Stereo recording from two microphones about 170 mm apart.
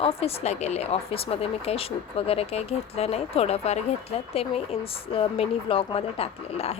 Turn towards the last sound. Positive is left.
turn(degrees=35)  # may be behind; listen again after turning